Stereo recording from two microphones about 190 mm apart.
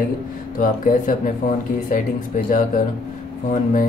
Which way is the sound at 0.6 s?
45° left (ahead or behind).